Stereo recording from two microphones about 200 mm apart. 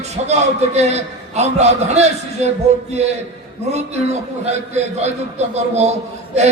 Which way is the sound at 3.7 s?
35° right (ahead or behind).